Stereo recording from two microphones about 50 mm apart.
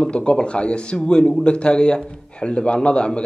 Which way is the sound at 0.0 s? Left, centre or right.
Left.